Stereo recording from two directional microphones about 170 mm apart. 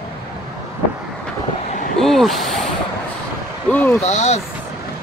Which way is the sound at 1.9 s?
Centre (ahead or behind).